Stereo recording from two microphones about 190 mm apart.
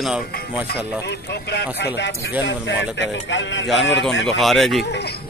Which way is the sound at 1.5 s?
60° left (ahead or behind).